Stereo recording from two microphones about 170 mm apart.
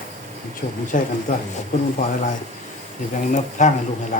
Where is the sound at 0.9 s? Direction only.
50° left (ahead or behind).